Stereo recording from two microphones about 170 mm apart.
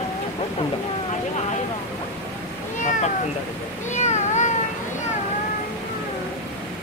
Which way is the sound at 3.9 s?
45° left (ahead or behind).